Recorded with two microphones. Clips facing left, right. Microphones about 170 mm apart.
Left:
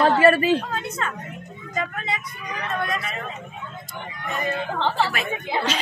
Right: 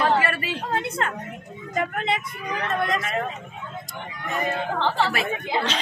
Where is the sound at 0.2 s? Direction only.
30° left (ahead or behind).